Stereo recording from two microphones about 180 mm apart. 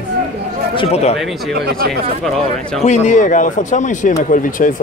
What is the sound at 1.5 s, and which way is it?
Speech, 60° right (ahead or behind).